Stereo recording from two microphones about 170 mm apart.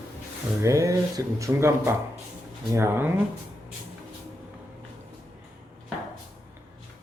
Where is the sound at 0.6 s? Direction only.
20° right (ahead or behind).